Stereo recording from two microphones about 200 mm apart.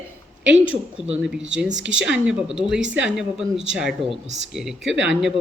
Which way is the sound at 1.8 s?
5° right (ahead or behind).